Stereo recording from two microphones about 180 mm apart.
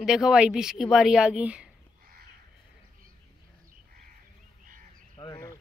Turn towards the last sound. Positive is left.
turn(degrees=35)  # may be behind; listen again after turning